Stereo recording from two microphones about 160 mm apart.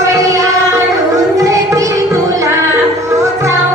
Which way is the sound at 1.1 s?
20° right (ahead or behind).